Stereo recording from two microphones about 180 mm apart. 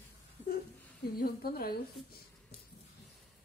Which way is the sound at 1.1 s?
55° left (ahead or behind).